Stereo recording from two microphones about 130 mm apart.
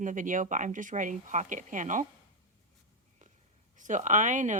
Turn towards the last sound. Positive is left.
turn(degrees=-75)  # may be behind; listen again after turning